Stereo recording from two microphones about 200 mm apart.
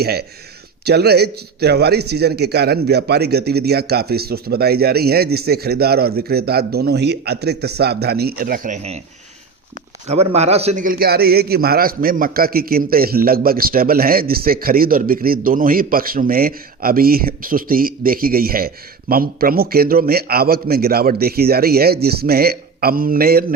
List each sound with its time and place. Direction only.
0.0 s a man's voice: 50° right (ahead or behind); by 9.0 s 35° right (ahead or behind)
10.1 s a man's voice: 30° right (ahead or behind); by 23.5 s 50° right (ahead or behind)